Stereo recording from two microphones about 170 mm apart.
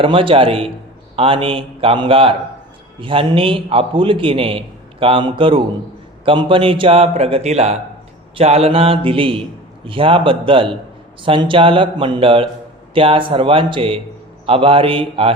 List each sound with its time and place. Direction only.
0.0 s a man's voice: 30° right (ahead or behind)